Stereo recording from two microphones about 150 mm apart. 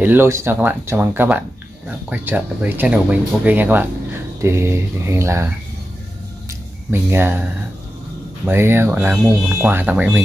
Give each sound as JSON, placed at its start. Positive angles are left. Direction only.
{"t": 0.0, "sound": "speech", "side_deg": -15}
{"t": 6.9, "sound": "speech", "side_deg": -15}
{"t": 8.5, "sound": "speech", "side_deg": -15}